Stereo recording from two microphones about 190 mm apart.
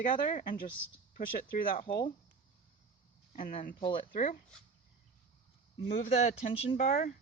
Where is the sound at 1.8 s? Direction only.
25° left (ahead or behind).